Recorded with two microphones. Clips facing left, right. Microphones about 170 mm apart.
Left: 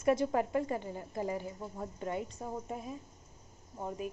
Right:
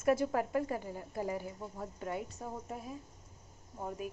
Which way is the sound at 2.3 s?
10° left (ahead or behind).